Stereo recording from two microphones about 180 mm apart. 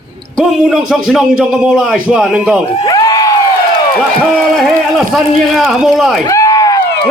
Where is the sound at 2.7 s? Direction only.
20° left (ahead or behind).